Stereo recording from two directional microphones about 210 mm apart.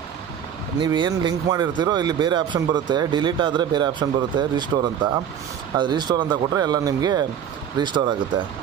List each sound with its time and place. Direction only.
0.7 s speech: 20° right (ahead or behind)